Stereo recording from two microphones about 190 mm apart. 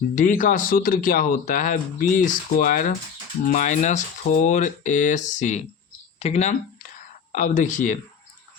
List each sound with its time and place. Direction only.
0.2 s speech: 45° left (ahead or behind)